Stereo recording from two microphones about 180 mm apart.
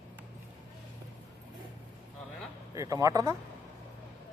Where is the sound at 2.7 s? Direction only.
20° right (ahead or behind).